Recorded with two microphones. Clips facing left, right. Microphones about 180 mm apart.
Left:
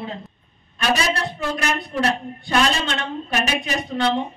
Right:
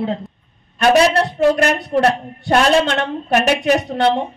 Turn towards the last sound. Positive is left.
turn(degrees=-65)  # may be behind; listen again after turning